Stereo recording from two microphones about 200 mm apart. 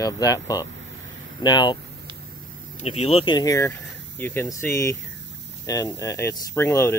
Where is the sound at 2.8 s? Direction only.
30° left (ahead or behind).